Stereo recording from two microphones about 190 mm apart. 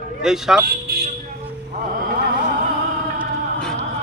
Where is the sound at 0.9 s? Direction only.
55° right (ahead or behind).